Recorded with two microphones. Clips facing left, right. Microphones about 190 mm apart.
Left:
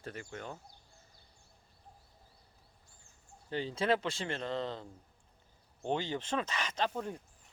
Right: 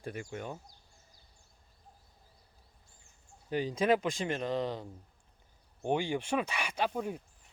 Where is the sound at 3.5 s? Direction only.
15° right (ahead or behind).